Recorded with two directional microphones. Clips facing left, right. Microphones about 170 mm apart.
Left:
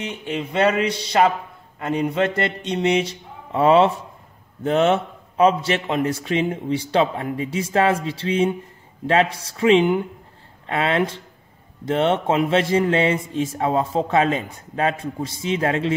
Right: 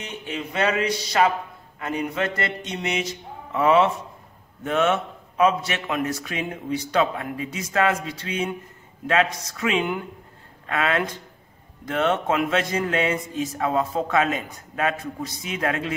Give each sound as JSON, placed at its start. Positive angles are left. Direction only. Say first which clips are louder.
{"t": 0.3, "sound": "a man's voice", "louder": "left 4 dB", "side_deg": 25}